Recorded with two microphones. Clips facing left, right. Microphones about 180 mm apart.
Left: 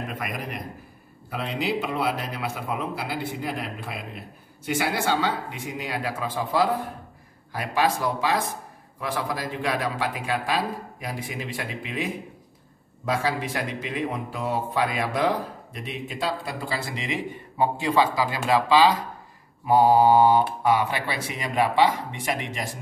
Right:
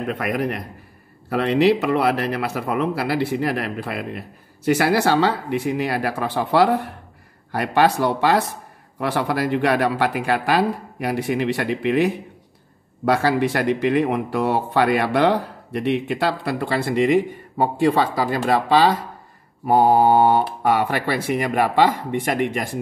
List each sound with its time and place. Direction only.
0.0 s speech: 65° right (ahead or behind)